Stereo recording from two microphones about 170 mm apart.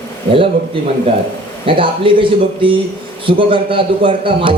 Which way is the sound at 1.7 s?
30° right (ahead or behind).